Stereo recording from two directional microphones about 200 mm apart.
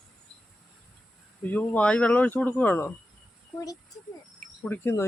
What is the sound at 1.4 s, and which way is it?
Speech, 10° left (ahead or behind).